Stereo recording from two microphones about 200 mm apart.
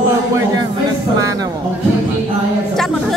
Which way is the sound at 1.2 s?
15° right (ahead or behind).